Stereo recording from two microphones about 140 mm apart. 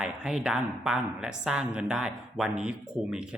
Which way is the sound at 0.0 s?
5° right (ahead or behind).